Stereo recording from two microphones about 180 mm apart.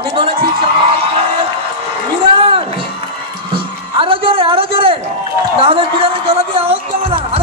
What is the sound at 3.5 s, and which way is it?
A man's voice, 30° right (ahead or behind).